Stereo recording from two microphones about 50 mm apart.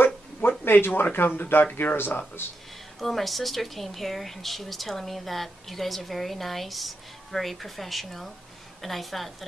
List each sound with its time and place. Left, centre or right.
0.0 s a sound: left
1.8 s speech: left
3.0 s speech: centre